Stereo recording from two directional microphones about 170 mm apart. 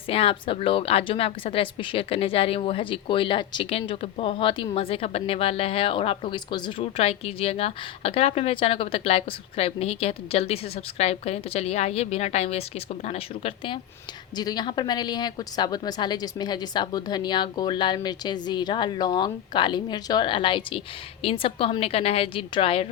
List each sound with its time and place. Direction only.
0.1 s a woman's voice: 35° left (ahead or behind)
14.3 s a woman's voice: 25° left (ahead or behind)